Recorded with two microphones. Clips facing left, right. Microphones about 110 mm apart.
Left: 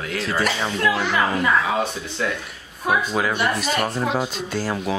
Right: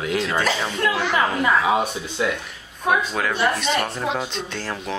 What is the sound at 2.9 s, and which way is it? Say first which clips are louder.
Speech: even; 10° left (ahead or behind).